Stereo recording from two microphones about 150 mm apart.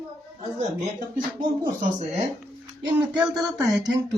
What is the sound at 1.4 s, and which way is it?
Speech, 60° right (ahead or behind).